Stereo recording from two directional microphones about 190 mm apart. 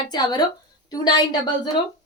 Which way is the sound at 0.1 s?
20° left (ahead or behind).